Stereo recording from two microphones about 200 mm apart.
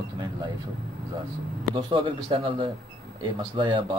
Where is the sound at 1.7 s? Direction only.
25° right (ahead or behind).